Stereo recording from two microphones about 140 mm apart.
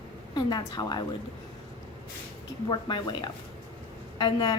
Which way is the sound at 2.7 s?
30° left (ahead or behind).